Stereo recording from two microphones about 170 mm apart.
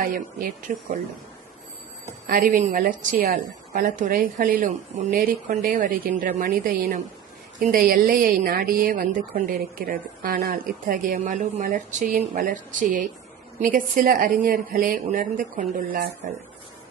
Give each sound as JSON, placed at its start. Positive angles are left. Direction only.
{"t": 0.0, "sound": "speech", "side_deg": -50}
{"t": 2.2, "sound": "speech", "side_deg": -55}